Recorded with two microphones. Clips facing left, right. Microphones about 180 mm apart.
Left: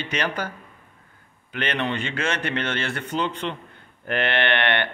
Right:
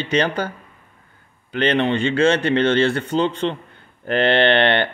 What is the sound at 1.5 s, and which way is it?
Speech, 30° right (ahead or behind).